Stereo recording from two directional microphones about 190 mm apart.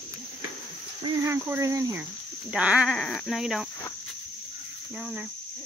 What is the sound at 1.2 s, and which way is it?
Speech, 10° right (ahead or behind).